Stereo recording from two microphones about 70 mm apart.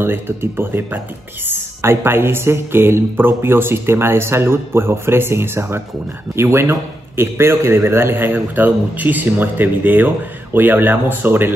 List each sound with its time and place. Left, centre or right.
0.0 s a man's voice: right